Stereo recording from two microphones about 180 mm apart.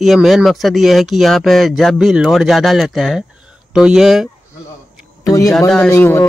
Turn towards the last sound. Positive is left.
turn(degrees=15)  # may be behind; listen again after turning